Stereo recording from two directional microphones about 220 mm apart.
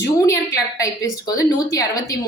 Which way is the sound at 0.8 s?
15° left (ahead or behind).